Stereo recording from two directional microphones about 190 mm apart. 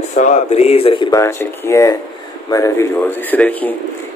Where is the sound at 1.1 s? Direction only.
15° left (ahead or behind).